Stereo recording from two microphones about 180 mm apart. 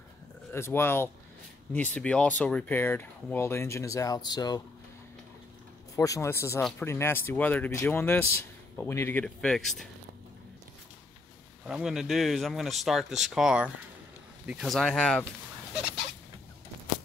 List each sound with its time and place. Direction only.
0.5 s speech: 15° left (ahead or behind)
5.9 s speech: 15° left (ahead or behind); by 9.8 s centre (ahead or behind)
11.6 s speech: 5° right (ahead or behind)